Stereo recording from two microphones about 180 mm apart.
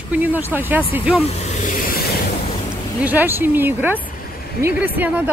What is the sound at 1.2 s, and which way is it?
Vehicle, 40° left (ahead or behind).